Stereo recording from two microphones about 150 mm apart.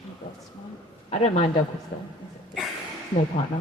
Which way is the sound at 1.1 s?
45° left (ahead or behind).